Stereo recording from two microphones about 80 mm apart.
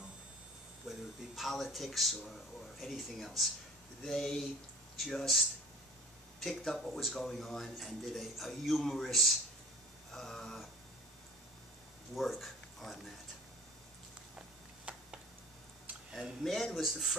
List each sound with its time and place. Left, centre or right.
0.8 s speech: centre
12.2 s speech: centre
14.9 s a sound: centre
16.1 s speech: centre